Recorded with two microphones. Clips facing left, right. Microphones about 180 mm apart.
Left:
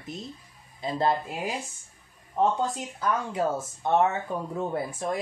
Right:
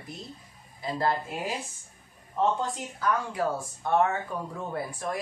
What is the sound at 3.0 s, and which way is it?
Speech, 20° left (ahead or behind).